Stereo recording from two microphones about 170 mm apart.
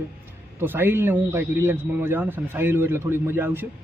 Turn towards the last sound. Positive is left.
turn(degrees=-10)  # may be behind; listen again after turning